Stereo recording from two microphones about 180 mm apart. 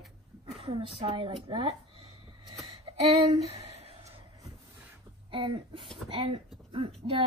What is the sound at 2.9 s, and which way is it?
Speech, 35° right (ahead or behind).